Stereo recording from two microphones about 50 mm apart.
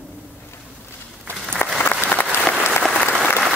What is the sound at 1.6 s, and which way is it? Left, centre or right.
Applause, left.